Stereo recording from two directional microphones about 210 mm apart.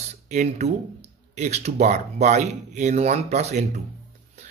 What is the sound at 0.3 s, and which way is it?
A man's voice, 35° right (ahead or behind).